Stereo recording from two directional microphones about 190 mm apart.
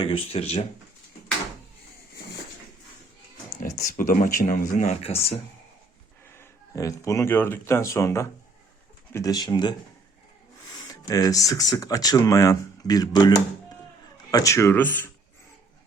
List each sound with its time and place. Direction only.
0.0 s speech: 30° left (ahead or behind)
3.6 s speech: 45° left (ahead or behind)
6.3 s speech: 15° left (ahead or behind)